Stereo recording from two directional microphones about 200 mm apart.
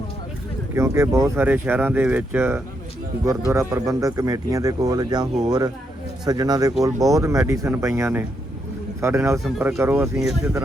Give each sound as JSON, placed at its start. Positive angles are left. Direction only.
{"t": 0.7, "sound": "speech", "side_deg": -15}
{"t": 9.4, "sound": "speech", "side_deg": -5}
{"t": 10.2, "sound": "speech", "side_deg": 0}